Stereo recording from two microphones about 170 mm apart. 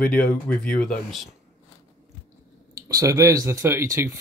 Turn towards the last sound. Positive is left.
turn(degrees=-15)  # may be behind; listen again after turning